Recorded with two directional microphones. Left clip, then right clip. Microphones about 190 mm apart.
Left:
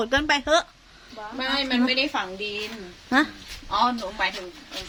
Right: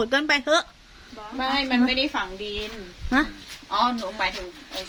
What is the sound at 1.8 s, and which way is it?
Speech, 45° left (ahead or behind).